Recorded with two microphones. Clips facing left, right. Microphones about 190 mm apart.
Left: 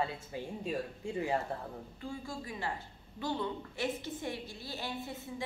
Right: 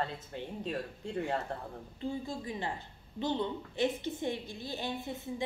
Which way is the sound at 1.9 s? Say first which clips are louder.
Right 6 dB; 20° right (ahead or behind).